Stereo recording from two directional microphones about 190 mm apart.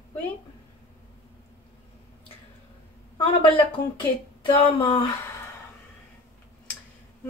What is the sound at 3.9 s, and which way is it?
Speech, 25° left (ahead or behind).